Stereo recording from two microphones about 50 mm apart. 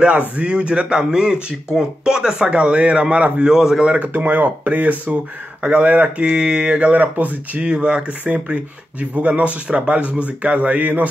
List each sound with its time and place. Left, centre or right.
0.4 s speech: right
3.4 s mantra: centre
3.8 s speech: right
4.1 s speech: right
6.4 s mantra: centre
6.8 s speech: right
7.7 s speech: right